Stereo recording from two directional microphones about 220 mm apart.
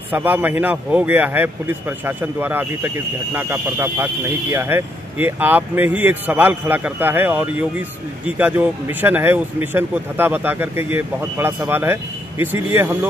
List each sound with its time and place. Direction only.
0.1 s speech: 10° right (ahead or behind)